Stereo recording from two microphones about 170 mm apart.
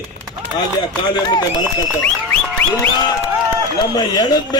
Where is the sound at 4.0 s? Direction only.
25° left (ahead or behind).